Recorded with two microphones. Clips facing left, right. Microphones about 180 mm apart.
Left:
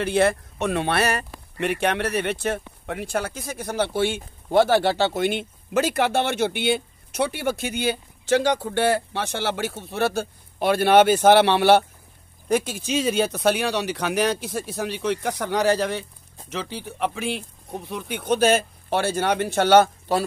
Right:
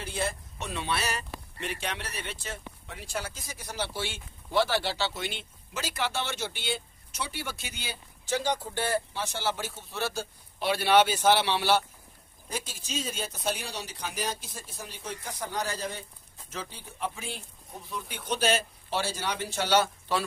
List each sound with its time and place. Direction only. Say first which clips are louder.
0.0 s speech: left 13 dB; 70° left (ahead or behind); by 20.2 s 45° left (ahead or behind)